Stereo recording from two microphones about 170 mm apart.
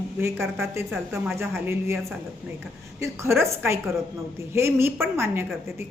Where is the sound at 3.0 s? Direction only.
15° right (ahead or behind).